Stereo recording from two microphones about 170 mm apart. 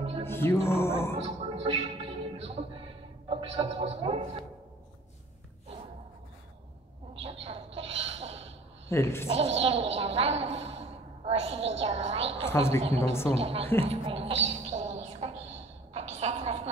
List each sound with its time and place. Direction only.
0.2 s music: 15° left (ahead or behind)
1.1 s music: 35° right (ahead or behind)
7.2 s a sound: 35° right (ahead or behind)
8.9 s a woman's voice: 15° left (ahead or behind)
9.6 s a woman's voice: 35° right (ahead or behind)
9.9 s a sound: 35° right (ahead or behind)
11.8 s music: 40° right (ahead or behind)
12.4 s a woman's voice: 15° left (ahead or behind)
12.8 s a woman's voice: 35° right (ahead or behind)
13.8 s a sound: 35° right (ahead or behind)